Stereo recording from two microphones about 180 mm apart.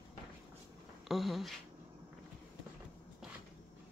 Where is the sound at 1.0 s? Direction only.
Centre (ahead or behind).